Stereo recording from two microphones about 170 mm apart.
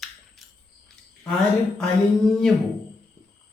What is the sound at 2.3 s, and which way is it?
Speech, 5° left (ahead or behind).